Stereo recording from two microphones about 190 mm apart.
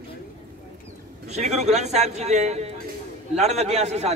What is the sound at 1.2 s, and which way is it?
A man's voice, 35° right (ahead or behind).